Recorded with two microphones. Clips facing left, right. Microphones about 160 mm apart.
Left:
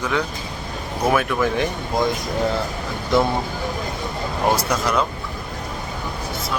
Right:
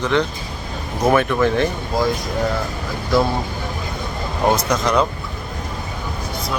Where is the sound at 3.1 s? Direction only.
20° left (ahead or behind).